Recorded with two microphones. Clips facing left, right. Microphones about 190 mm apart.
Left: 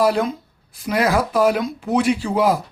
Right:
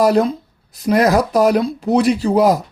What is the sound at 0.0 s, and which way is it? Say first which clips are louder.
Speech: right 4 dB; 40° right (ahead or behind).